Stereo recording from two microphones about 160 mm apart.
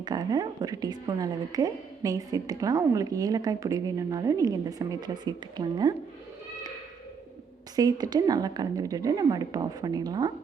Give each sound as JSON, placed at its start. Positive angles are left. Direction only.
{"t": 0.0, "sound": "a woman's voice", "side_deg": -25}
{"t": 7.8, "sound": "a woman's voice", "side_deg": -25}